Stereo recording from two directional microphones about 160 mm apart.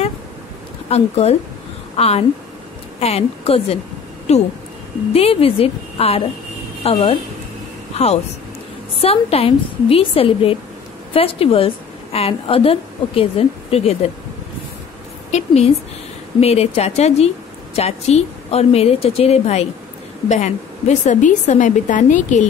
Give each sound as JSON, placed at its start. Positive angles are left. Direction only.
{"t": 0.8, "sound": "a woman's voice", "side_deg": 40}
{"t": 15.3, "sound": "a woman's voice", "side_deg": 40}